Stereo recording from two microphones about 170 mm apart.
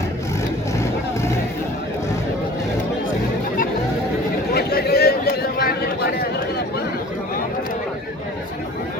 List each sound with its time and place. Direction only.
0.8 s music: 15° left (ahead or behind)
4.5 s chatter: 70° left (ahead or behind)